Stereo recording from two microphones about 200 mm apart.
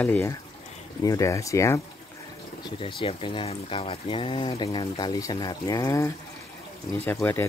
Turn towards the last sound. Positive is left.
turn(degrees=10)  # may be behind; listen again after turning